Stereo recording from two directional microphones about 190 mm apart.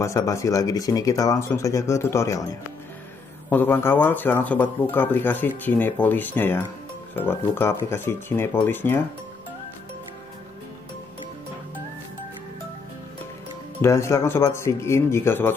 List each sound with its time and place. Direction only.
0.0 s speech: 15° left (ahead or behind)
3.4 s speech: 10° left (ahead or behind)
13.7 s speech: 15° left (ahead or behind)